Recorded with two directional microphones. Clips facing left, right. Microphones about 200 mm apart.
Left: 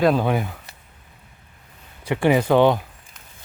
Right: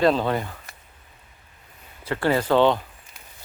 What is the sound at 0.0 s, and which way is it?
Speech, 10° left (ahead or behind).